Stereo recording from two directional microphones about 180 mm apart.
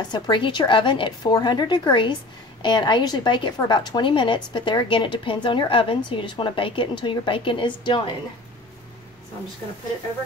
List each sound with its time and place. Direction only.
0.1 s a woman's voice: 25° left (ahead or behind)